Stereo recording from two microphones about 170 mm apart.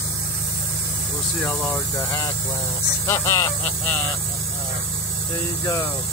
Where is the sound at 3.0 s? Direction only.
15° left (ahead or behind).